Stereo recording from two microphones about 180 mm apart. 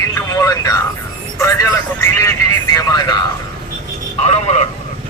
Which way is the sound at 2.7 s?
25° left (ahead or behind).